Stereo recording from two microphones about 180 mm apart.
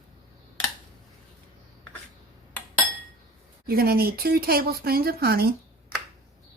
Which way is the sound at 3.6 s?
55° right (ahead or behind).